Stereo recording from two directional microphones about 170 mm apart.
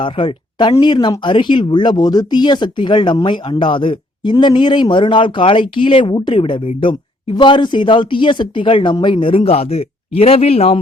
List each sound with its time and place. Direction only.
0.0 s speech: 30° left (ahead or behind)